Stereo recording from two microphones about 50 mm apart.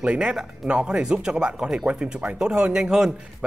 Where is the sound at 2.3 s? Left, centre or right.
Centre.